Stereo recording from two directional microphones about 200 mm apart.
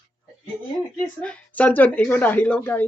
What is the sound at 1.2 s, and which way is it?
A woman's voice, 5° left (ahead or behind).